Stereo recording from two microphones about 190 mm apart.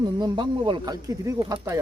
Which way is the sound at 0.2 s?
25° right (ahead or behind).